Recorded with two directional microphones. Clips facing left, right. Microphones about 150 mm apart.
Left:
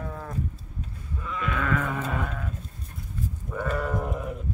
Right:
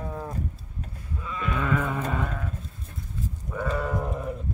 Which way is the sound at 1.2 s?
10° right (ahead or behind).